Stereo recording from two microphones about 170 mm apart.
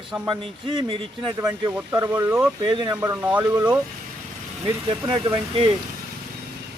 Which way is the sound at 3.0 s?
15° right (ahead or behind).